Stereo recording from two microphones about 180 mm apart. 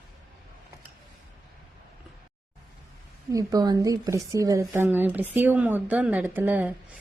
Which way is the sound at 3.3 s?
20° right (ahead or behind).